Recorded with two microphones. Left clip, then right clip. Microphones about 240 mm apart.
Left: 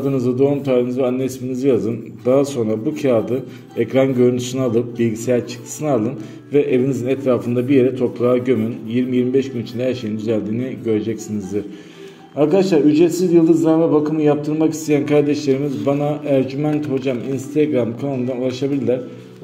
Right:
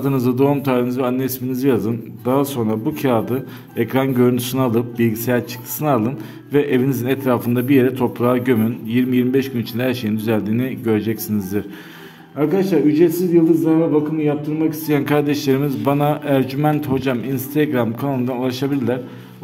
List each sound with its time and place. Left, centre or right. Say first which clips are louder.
0.0 s a man's voice: even; right
12.5 s a man's voice: left 2 dB; centre
13.6 s a sound: left 1 dB; centre
14.9 s a man's voice: left 2 dB; centre